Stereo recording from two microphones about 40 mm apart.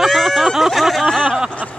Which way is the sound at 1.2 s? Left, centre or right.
Centre.